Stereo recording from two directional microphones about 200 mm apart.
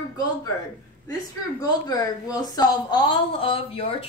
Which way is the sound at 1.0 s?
20° left (ahead or behind).